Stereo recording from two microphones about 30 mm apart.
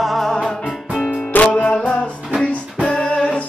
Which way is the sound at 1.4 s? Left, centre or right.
Left.